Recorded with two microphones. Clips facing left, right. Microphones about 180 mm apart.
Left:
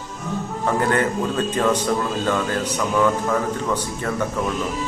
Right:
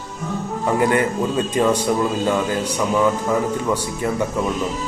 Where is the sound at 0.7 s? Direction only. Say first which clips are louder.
Right 2 dB; 15° right (ahead or behind).